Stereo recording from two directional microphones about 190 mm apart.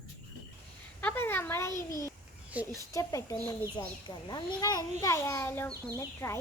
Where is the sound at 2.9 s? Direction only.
15° left (ahead or behind).